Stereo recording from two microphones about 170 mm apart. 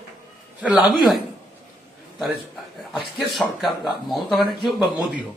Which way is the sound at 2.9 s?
Centre (ahead or behind).